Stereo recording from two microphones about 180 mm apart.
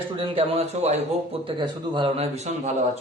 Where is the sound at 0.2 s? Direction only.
30° right (ahead or behind).